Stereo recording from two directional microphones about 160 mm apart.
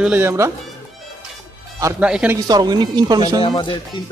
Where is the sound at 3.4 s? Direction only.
30° left (ahead or behind).